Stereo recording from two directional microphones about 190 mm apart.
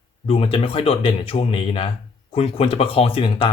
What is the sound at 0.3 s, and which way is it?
Speech, 30° left (ahead or behind).